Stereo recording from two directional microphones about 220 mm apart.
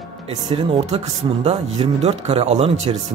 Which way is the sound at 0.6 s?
25° right (ahead or behind).